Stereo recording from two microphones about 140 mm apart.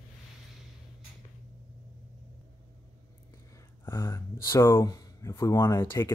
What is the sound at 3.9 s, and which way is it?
Speech, 20° left (ahead or behind).